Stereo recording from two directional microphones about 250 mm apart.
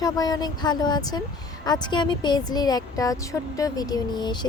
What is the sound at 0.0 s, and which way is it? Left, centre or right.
Speech, centre.